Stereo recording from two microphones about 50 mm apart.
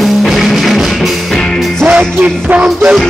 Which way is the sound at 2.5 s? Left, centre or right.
Right.